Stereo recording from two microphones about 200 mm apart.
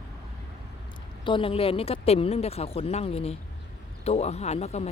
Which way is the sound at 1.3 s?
25° left (ahead or behind).